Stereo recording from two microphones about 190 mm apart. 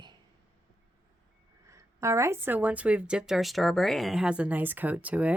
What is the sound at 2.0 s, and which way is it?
A woman's voice, 15° right (ahead or behind).